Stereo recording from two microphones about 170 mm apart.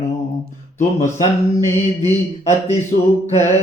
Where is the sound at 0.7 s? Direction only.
45° left (ahead or behind).